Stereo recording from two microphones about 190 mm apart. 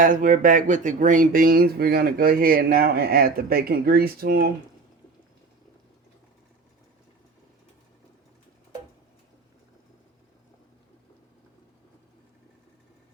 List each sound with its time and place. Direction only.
0.0 s speech: 45° right (ahead or behind)